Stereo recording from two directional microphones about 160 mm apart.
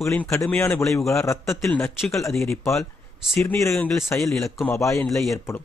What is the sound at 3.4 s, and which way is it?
Speech, 15° left (ahead or behind).